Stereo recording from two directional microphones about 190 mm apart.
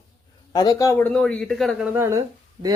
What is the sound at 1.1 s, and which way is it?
Speech, 5° left (ahead or behind).